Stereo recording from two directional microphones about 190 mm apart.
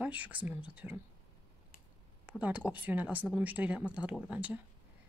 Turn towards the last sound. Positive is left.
turn(degrees=-5)  # may be behind; listen again after turning